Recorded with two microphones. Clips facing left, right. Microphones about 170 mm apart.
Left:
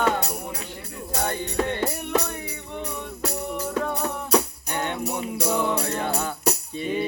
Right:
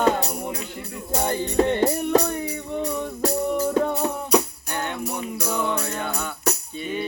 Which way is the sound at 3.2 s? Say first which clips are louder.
Right 7 dB; 35° right (ahead or behind).